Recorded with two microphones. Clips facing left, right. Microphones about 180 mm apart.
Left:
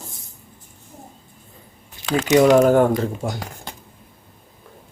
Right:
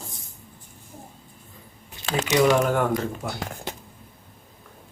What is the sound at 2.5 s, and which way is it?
Speech, 40° left (ahead or behind).